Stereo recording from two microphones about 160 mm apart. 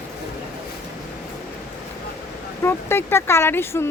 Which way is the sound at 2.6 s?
15° left (ahead or behind).